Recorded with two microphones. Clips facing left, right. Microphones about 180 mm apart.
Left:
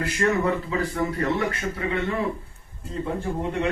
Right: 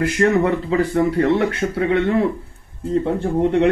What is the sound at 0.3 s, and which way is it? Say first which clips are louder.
Speech: right 6 dB; 75° right (ahead or behind).